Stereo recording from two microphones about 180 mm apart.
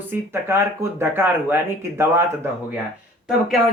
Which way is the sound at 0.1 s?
15° right (ahead or behind).